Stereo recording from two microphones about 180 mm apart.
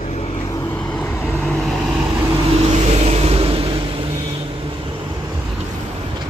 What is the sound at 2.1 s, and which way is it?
Vehicle, 15° right (ahead or behind).